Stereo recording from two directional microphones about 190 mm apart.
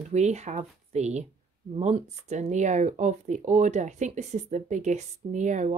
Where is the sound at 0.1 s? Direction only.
35° right (ahead or behind).